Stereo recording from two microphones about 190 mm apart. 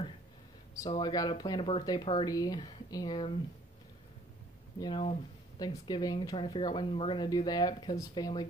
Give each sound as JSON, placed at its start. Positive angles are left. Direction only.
{"t": 0.7, "sound": "speech", "side_deg": 20}
{"t": 4.7, "sound": "speech", "side_deg": 25}